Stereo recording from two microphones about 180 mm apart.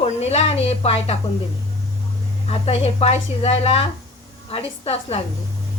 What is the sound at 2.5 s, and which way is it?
Speech, 35° left (ahead or behind).